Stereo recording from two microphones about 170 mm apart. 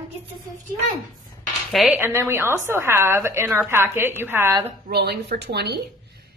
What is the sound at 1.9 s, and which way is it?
A woman's voice, 15° right (ahead or behind).